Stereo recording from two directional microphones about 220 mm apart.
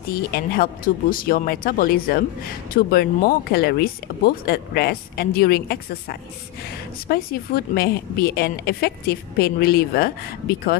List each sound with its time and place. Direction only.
0.1 s a woman's voice: 40° left (ahead or behind)